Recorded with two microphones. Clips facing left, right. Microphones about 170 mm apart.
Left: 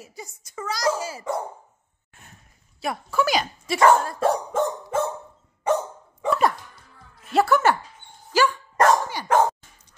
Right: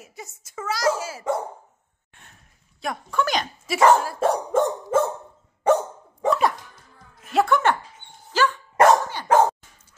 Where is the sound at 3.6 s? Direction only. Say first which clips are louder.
Right 1 dB; 5° right (ahead or behind).